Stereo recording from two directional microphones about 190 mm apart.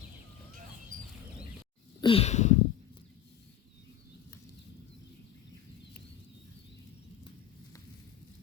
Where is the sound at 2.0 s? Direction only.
30° left (ahead or behind).